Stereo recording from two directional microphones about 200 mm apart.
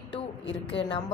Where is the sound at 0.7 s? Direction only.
25° left (ahead or behind).